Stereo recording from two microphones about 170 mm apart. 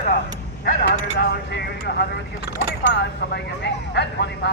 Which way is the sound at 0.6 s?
65° left (ahead or behind).